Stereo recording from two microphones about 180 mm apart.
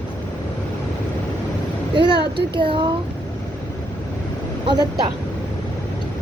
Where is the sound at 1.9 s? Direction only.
25° right (ahead or behind).